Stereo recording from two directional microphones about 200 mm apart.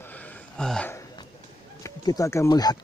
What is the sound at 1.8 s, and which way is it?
Speech, 15° left (ahead or behind).